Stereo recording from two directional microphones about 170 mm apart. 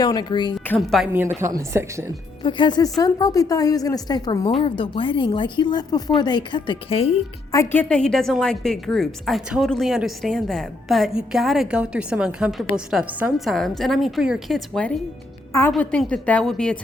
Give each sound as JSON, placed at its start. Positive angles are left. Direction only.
{"t": 0.0, "sound": "a woman's voice", "side_deg": 25}
{"t": 0.7, "sound": "a woman's voice", "side_deg": 0}
{"t": 1.4, "sound": "a woman's voice", "side_deg": -15}
{"t": 2.4, "sound": "a woman's voice", "side_deg": 25}
{"t": 7.5, "sound": "a woman's voice", "side_deg": 15}